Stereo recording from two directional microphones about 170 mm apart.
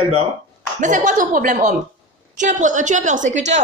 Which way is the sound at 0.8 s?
50° right (ahead or behind).